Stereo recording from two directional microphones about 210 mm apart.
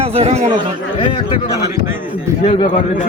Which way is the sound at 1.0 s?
25° left (ahead or behind).